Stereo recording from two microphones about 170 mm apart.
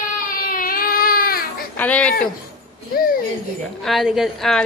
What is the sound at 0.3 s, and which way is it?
Baby cry, 55° left (ahead or behind).